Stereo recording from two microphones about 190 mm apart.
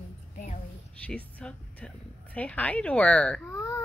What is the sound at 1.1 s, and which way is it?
A woman's voice, 5° left (ahead or behind).